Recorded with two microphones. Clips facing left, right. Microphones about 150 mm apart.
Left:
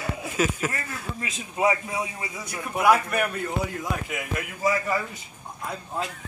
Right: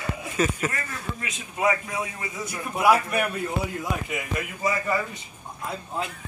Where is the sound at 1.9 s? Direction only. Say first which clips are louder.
Left 1 dB; 15° left (ahead or behind).